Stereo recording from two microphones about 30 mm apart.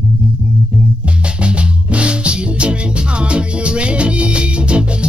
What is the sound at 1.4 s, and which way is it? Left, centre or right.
Music, right.